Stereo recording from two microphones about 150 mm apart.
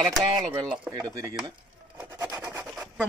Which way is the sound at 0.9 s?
20° right (ahead or behind).